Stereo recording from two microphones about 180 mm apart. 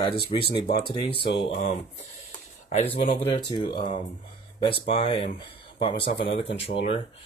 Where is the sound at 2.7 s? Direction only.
35° left (ahead or behind).